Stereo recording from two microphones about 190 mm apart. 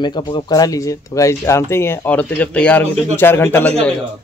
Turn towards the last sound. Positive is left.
turn(degrees=10)  # may be behind; listen again after turning